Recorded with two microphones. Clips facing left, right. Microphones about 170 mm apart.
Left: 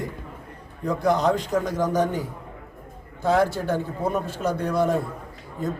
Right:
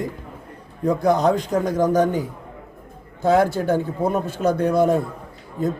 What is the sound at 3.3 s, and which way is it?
Speech, 15° right (ahead or behind).